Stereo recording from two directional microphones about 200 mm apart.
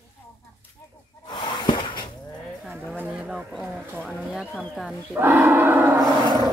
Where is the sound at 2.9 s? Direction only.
5° right (ahead or behind).